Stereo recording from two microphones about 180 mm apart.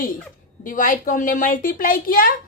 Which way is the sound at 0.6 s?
50° left (ahead or behind).